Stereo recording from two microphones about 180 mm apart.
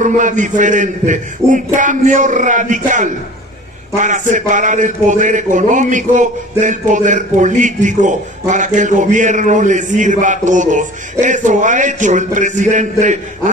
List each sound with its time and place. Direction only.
0.0 s a man's voice: 45° right (ahead or behind)